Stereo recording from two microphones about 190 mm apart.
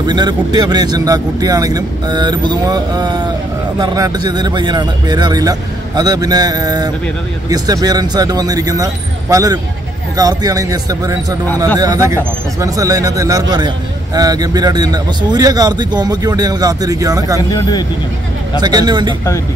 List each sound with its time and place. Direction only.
0.0 s speech: 25° right (ahead or behind)
17.4 s speech: 20° left (ahead or behind)
18.6 s speech: 20° right (ahead or behind)